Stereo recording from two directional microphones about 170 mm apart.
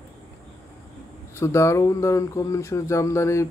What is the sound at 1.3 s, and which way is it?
Speech, 15° left (ahead or behind).